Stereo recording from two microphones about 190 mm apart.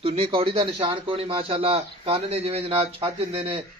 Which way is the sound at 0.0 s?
30° right (ahead or behind).